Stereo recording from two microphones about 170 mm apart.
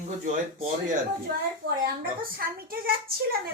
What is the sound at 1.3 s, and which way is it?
Speech, 60° right (ahead or behind).